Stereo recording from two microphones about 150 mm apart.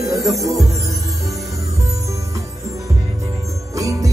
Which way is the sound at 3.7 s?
20° right (ahead or behind).